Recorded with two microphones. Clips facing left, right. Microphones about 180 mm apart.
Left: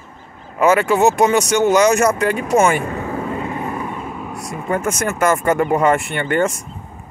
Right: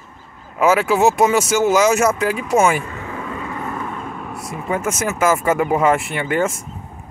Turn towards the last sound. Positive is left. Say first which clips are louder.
# left 2 dB
turn(degrees=0)  # may be behind; listen again after turning